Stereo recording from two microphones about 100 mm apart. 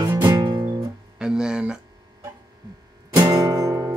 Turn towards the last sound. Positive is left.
turn(degrees=-35)  # may be behind; listen again after turning